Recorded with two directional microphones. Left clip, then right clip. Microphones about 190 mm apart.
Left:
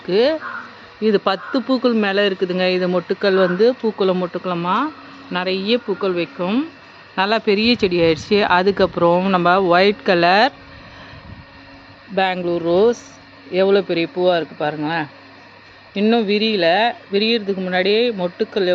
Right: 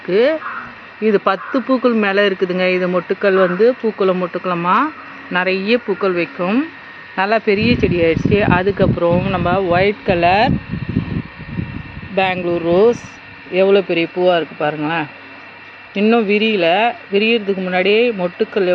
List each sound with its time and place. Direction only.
0.1 s speech: 5° left (ahead or behind)
5.5 s speech: 50° left (ahead or behind)
6.4 s speech: centre (ahead or behind)
7.2 s speech: 10° left (ahead or behind)
12.1 s a man's voice: centre (ahead or behind)